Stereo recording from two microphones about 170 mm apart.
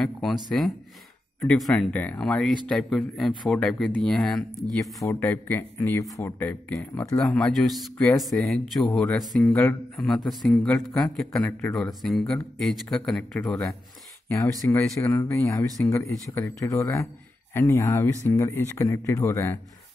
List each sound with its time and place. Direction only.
0.0 s speech: centre (ahead or behind)
5.0 s speech: 15° left (ahead or behind)
7.2 s speech: 5° left (ahead or behind)
11.3 s speech: 15° left (ahead or behind)
11.7 s speech: centre (ahead or behind)
14.3 s speech: 15° left (ahead or behind)